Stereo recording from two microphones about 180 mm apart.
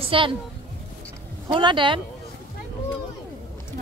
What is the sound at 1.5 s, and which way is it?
Speech, 25° right (ahead or behind).